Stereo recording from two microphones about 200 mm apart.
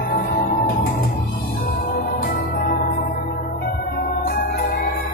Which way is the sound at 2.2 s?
45° left (ahead or behind).